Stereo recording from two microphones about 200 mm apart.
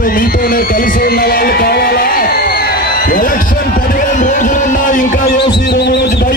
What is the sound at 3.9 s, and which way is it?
Music, 40° left (ahead or behind).